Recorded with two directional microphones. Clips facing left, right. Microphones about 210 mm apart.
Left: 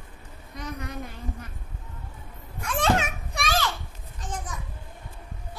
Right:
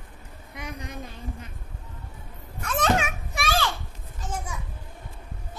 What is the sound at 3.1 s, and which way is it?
Children playing, 5° right (ahead or behind).